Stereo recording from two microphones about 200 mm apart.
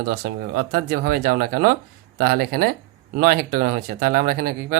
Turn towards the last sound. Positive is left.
turn(degrees=-50)  # may be behind; listen again after turning